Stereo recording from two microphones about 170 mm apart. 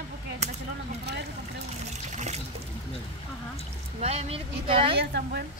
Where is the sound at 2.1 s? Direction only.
40° right (ahead or behind).